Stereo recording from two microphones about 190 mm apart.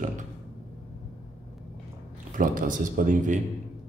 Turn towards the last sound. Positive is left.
turn(degrees=-45)  # may be behind; listen again after turning